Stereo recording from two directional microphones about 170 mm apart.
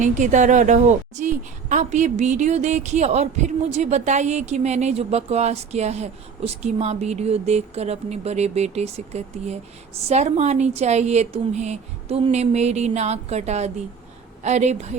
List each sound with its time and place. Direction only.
0.0 s speech: 45° right (ahead or behind)